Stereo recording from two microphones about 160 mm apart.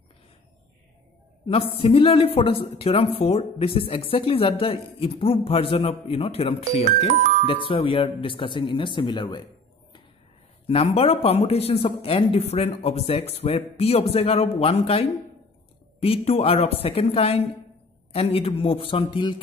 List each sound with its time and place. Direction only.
1.5 s speech: 35° left (ahead or behind)
10.7 s speech: 35° left (ahead or behind)